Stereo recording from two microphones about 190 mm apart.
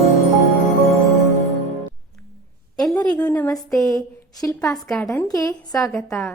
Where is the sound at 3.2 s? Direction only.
10° left (ahead or behind).